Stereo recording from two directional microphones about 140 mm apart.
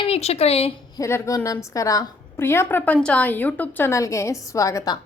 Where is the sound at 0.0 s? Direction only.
45° left (ahead or behind).